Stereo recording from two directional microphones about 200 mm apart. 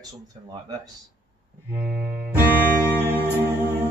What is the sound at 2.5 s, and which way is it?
Music, 10° left (ahead or behind).